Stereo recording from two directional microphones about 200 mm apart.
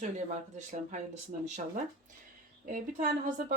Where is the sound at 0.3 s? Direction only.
35° right (ahead or behind).